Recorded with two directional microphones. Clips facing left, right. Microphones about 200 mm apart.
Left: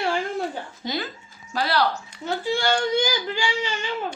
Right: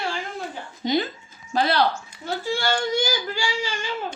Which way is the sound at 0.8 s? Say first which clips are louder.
Right 8 dB; 20° right (ahead or behind).